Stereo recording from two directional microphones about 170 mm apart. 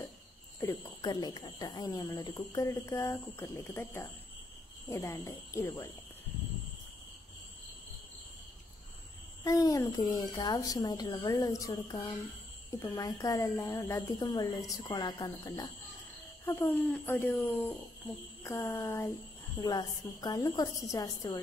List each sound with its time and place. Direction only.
0.6 s speech: 20° left (ahead or behind)
9.4 s speech: 20° left (ahead or behind)
16.4 s speech: 15° left (ahead or behind)